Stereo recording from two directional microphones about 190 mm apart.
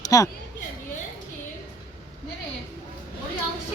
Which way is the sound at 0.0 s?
15° left (ahead or behind).